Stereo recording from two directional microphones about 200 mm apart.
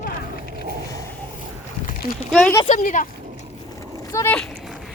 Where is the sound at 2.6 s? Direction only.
40° left (ahead or behind).